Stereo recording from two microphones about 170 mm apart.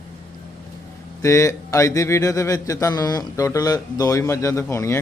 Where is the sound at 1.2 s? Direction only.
15° left (ahead or behind).